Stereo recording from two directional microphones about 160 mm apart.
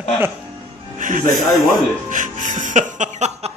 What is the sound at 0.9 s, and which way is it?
Music, 55° right (ahead or behind).